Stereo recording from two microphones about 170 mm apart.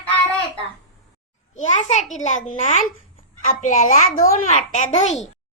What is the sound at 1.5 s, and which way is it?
A child's voice, 45° left (ahead or behind).